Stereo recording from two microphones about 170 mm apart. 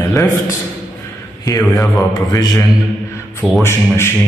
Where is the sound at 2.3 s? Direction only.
20° left (ahead or behind).